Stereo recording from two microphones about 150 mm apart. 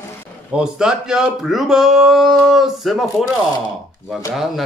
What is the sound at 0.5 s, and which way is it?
Speech, 5° right (ahead or behind).